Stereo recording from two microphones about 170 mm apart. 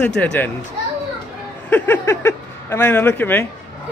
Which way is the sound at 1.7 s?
10° left (ahead or behind).